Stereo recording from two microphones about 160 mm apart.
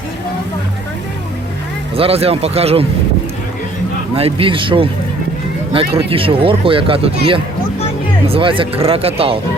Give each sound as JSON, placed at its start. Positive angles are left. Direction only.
{"t": 2.0, "sound": "speech", "side_deg": -40}
{"t": 4.1, "sound": "speech", "side_deg": -35}